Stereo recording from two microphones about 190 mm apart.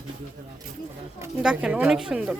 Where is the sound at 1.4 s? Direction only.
5° right (ahead or behind).